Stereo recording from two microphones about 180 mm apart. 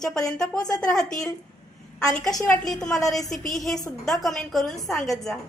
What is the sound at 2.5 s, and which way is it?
A woman's voice, 5° left (ahead or behind).